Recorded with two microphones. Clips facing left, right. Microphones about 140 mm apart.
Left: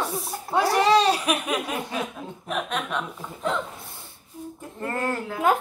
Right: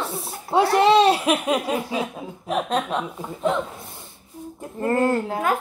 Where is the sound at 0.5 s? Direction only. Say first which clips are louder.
Right 4 dB; 25° right (ahead or behind).